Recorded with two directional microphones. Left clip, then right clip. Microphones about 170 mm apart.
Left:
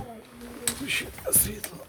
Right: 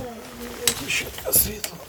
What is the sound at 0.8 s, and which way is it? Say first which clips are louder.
Speech: right 4 dB; 35° left (ahead or behind).